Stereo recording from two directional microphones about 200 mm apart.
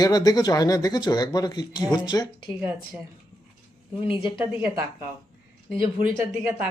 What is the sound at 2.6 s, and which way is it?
Speech, 10° right (ahead or behind).